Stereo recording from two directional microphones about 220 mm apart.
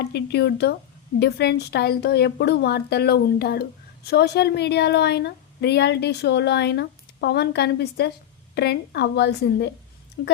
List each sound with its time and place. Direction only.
0.0 s a woman's voice: 50° left (ahead or behind)